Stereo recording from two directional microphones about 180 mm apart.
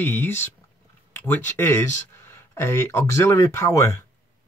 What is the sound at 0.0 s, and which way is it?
Speech, 10° left (ahead or behind).